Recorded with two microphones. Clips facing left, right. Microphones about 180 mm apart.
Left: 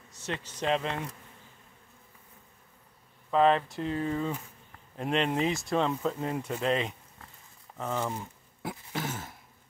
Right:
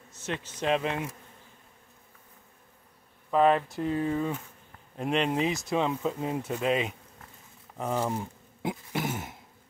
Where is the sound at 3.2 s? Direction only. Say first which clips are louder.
Right 1 dB; 5° right (ahead or behind).